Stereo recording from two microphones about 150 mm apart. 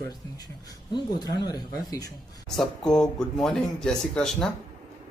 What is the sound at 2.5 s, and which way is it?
Speech, 5° left (ahead or behind).